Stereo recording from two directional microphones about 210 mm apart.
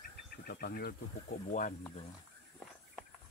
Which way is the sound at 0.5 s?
45° left (ahead or behind).